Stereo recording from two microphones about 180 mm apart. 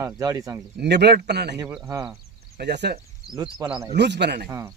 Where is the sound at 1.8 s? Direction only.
20° right (ahead or behind).